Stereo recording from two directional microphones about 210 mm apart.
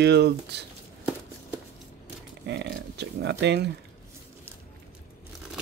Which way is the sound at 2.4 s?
55° right (ahead or behind).